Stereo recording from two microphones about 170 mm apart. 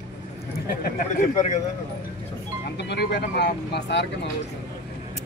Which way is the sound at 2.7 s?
85° left.